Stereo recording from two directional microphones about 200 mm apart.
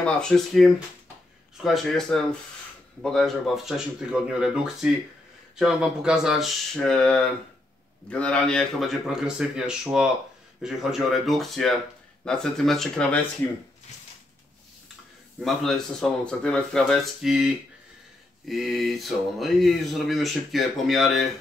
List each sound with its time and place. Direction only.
0.0 s speech: centre (ahead or behind)
15.4 s speech: centre (ahead or behind)